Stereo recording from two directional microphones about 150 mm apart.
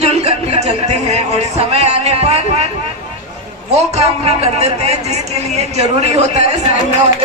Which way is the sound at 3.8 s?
45° right (ahead or behind).